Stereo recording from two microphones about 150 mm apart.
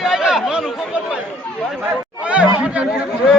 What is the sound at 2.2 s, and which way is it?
Speech, 5° right (ahead or behind).